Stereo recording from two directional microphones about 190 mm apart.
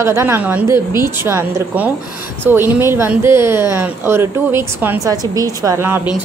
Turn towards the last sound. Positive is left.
turn(degrees=-10)  # may be behind; listen again after turning